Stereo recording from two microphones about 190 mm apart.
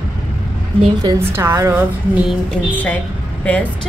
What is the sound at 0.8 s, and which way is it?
Speech, 20° right (ahead or behind).